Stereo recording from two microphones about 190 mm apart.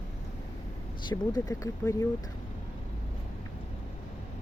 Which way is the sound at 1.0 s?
20° left (ahead or behind).